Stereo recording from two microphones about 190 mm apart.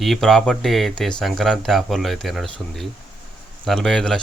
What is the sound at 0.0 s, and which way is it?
Speech, centre (ahead or behind).